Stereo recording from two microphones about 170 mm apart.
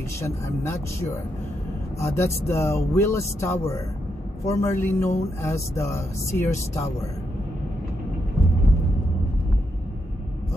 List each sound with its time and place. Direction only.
0.2 s speech: 15° left (ahead or behind)
2.0 s speech: 15° left (ahead or behind)